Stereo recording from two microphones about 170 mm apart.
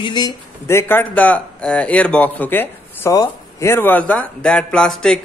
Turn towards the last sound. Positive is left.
turn(degrees=5)  # may be behind; listen again after turning